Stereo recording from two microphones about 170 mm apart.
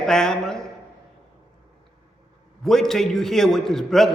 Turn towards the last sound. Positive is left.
turn(degrees=0)  # may be behind; listen again after turning